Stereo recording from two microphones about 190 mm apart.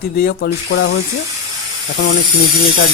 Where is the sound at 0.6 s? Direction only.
65° left (ahead or behind).